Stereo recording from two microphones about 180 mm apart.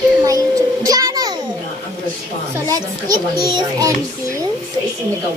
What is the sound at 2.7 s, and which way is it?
Speech, 20° right (ahead or behind).